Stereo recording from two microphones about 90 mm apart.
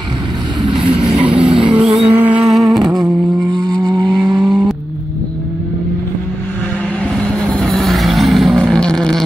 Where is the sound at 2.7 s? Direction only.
55° right (ahead or behind).